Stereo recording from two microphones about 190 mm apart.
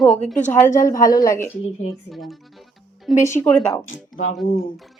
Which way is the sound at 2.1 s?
Centre (ahead or behind).